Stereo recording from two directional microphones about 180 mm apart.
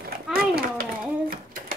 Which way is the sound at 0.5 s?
55° right (ahead or behind).